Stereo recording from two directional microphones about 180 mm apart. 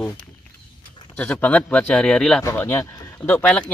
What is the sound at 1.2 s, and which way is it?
Speech, 5° left (ahead or behind).